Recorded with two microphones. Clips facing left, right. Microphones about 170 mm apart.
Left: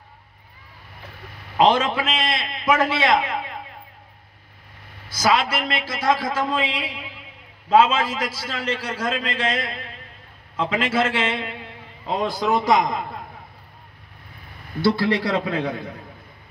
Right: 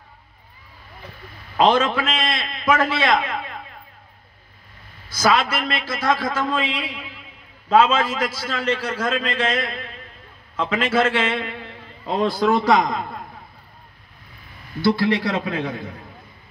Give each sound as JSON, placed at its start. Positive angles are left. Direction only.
{"t": 1.6, "sound": "a man's voice", "side_deg": 25}
{"t": 5.3, "sound": "a man's voice", "side_deg": 25}
{"t": 14.8, "sound": "a man's voice", "side_deg": 35}